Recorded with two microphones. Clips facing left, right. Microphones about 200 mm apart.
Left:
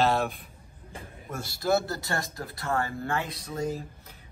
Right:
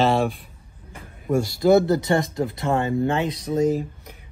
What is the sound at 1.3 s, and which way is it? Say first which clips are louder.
Speech: right 10 dB; 20° right (ahead or behind).